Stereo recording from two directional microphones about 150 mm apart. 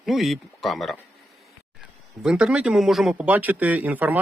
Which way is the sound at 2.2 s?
5° right (ahead or behind).